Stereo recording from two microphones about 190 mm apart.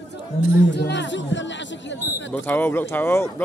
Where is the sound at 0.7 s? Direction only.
65° left (ahead or behind).